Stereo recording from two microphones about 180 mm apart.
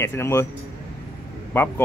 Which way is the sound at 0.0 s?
15° left (ahead or behind).